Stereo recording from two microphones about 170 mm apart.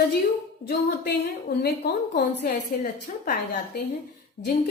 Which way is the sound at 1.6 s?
55° left (ahead or behind).